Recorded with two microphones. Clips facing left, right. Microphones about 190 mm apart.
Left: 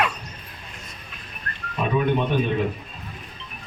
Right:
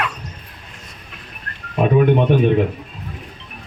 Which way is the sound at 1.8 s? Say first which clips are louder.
Right 7 dB; 60° right (ahead or behind).